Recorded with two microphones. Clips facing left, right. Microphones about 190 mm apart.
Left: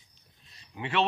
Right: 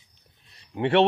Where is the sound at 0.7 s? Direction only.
65° right (ahead or behind).